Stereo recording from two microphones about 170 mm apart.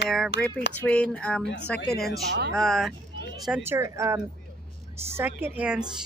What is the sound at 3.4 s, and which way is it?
A woman's voice, 10° right (ahead or behind).